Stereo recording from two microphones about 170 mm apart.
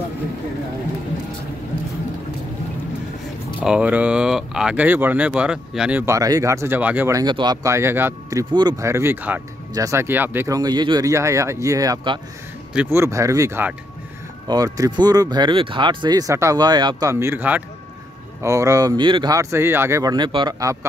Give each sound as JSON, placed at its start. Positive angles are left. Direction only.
{"t": 3.6, "sound": "speech", "side_deg": -5}